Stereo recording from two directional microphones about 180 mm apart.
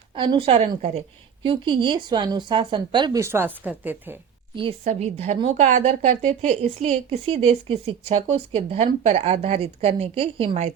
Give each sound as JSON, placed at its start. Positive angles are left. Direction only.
{"t": 0.1, "sound": "speech", "side_deg": -30}
{"t": 4.8, "sound": "speech", "side_deg": -40}